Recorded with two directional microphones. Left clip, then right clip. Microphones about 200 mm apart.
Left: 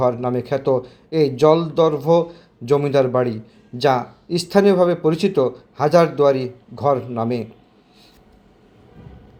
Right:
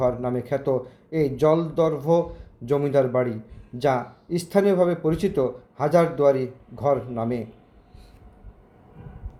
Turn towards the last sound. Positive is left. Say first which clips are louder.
# left 5 dB
turn(degrees=15)  # may be behind; listen again after turning